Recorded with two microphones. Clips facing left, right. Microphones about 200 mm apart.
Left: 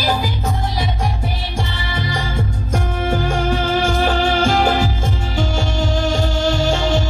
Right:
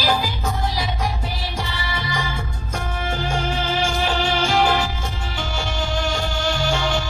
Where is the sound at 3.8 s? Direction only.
50° left (ahead or behind).